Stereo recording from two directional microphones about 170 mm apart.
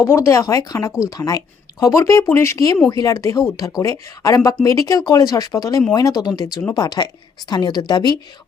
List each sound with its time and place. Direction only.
0.0 s speech: 15° left (ahead or behind)